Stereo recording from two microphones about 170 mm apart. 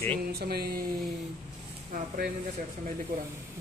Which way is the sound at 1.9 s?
55° right (ahead or behind).